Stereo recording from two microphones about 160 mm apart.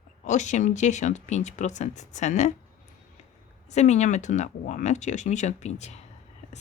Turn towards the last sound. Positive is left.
turn(degrees=45)  # may be behind; listen again after turning